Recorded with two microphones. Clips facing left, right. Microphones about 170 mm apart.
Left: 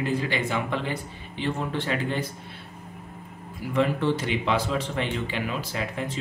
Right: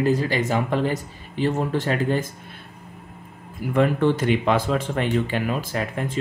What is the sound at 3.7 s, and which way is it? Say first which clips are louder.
Speech: right 4 dB; 50° right (ahead or behind).